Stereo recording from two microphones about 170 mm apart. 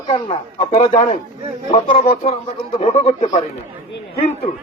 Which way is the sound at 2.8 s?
35° left (ahead or behind).